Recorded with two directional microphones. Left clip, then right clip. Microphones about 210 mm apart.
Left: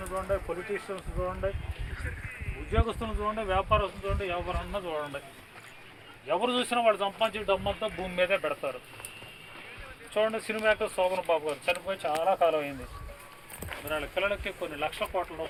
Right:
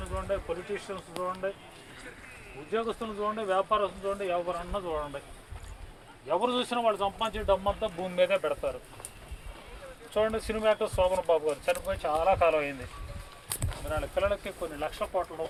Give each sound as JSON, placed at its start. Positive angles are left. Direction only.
{"t": 0.0, "sound": "speech", "side_deg": 30}
{"t": 2.7, "sound": "speech", "side_deg": 45}
{"t": 6.2, "sound": "speech", "side_deg": 30}
{"t": 7.9, "sound": "speech", "side_deg": 0}
{"t": 10.2, "sound": "speech", "side_deg": -5}
{"t": 13.9, "sound": "speech", "side_deg": 5}